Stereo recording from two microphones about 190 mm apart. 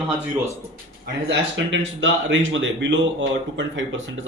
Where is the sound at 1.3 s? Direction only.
75° right (ahead or behind).